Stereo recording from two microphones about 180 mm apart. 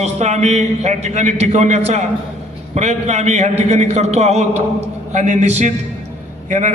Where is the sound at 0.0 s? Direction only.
40° right (ahead or behind).